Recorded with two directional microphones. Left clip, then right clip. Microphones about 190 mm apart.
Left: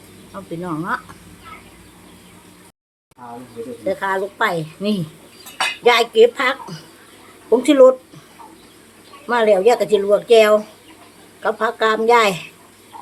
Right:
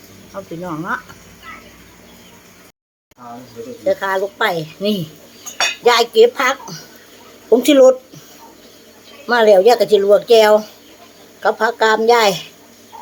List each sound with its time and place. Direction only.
0.3 s speech: centre (ahead or behind)
3.8 s speech: 5° right (ahead or behind)
7.5 s speech: 25° right (ahead or behind)
9.2 s speech: 15° right (ahead or behind)